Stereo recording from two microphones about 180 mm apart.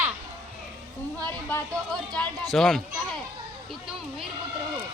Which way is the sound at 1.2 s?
10° left (ahead or behind).